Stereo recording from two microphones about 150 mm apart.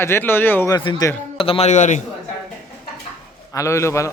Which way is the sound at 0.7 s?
30° left (ahead or behind).